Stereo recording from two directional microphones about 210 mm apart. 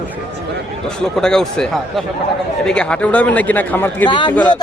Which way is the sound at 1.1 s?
Centre (ahead or behind).